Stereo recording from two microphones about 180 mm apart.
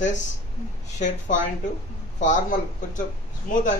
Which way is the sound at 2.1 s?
45° left (ahead or behind).